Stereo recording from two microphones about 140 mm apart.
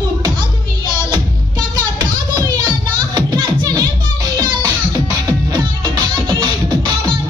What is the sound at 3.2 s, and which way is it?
Music, 30° right (ahead or behind).